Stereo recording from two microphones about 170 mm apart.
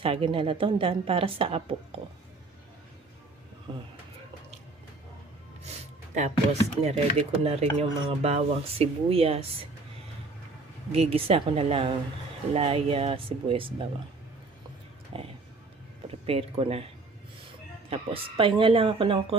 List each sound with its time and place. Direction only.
0.0 s speech: 30° right (ahead or behind)
6.1 s speech: 40° right (ahead or behind)
10.9 s speech: 35° right (ahead or behind)
15.1 s speech: 30° right (ahead or behind)
17.8 s speech: 35° right (ahead or behind)